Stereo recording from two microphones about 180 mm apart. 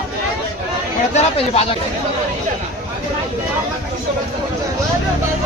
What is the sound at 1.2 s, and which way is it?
Speech, 35° left (ahead or behind).